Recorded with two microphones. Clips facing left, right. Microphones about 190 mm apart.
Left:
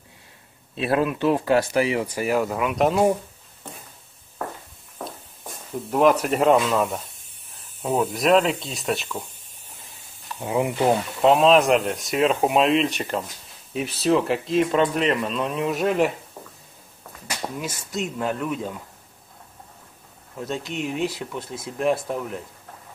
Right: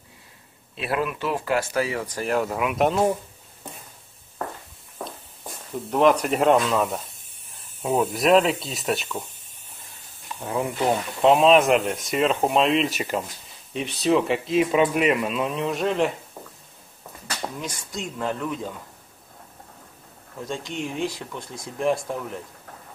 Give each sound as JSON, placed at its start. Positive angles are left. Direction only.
{"t": 0.7, "sound": "speech", "side_deg": 30}
{"t": 2.0, "sound": "speech", "side_deg": 5}
{"t": 5.9, "sound": "speech", "side_deg": 5}
{"t": 10.4, "sound": "speech", "side_deg": 15}
{"t": 11.2, "sound": "speech", "side_deg": 0}
{"t": 17.3, "sound": "speech", "side_deg": 5}
{"t": 20.4, "sound": "speech", "side_deg": 5}